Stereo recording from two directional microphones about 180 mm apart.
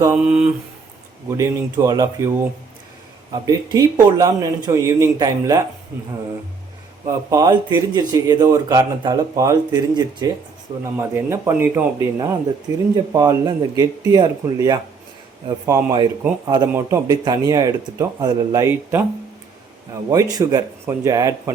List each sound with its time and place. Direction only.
0.0 s a sound: 10° right (ahead or behind)
1.4 s a man's voice: 20° right (ahead or behind)
3.4 s speech: 20° right (ahead or behind)
7.3 s a man's voice: 20° right (ahead or behind)
20.1 s speech: 20° right (ahead or behind)